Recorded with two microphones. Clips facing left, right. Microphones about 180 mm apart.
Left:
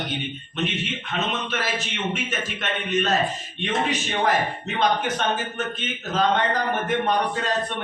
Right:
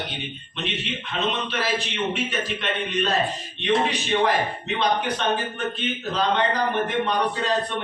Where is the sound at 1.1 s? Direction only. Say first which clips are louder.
Right 1 dB; 45° left (ahead or behind).